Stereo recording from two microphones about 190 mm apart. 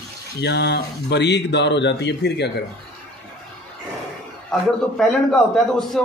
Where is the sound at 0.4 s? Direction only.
65° left (ahead or behind).